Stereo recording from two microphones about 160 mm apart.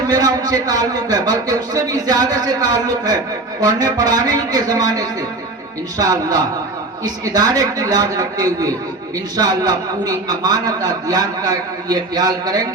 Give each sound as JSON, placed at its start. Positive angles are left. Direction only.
{"t": 0.1, "sound": "a man's voice", "side_deg": -25}